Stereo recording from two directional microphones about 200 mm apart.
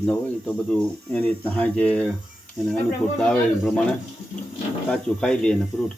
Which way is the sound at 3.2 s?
5° left (ahead or behind).